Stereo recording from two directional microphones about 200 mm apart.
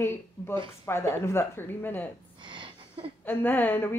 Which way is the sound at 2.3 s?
25° right (ahead or behind).